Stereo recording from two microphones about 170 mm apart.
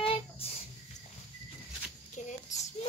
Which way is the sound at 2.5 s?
45° left (ahead or behind).